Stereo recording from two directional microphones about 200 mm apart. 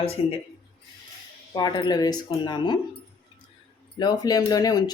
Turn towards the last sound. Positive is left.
turn(degrees=20)  # may be behind; listen again after turning